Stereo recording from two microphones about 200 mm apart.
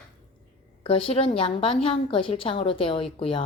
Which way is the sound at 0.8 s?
30° left (ahead or behind).